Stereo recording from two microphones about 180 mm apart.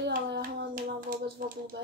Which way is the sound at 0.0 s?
60° right (ahead or behind).